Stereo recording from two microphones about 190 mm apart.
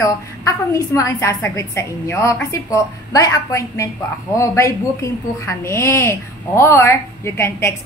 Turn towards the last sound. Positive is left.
turn(degrees=15)  # may be behind; listen again after turning